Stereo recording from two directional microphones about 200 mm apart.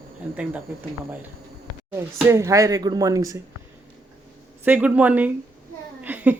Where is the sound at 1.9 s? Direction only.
15° right (ahead or behind).